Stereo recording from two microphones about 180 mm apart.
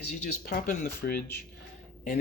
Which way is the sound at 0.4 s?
55° left (ahead or behind).